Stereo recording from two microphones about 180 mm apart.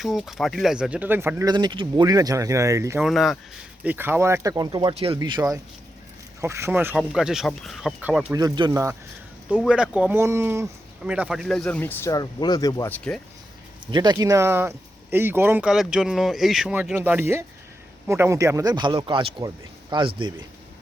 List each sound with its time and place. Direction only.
0.0 s speech: centre (ahead or behind); by 3.0 s 15° right (ahead or behind)
3.0 s speech: centre (ahead or behind)
3.8 s speech: 10° right (ahead or behind)
8.3 s speech: 20° right (ahead or behind); by 13.0 s 15° left (ahead or behind)
13.9 s speech: 20° right (ahead or behind)